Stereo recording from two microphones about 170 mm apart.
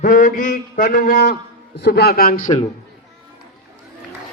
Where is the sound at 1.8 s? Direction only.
75° left (ahead or behind); by 2.5 s 60° left (ahead or behind).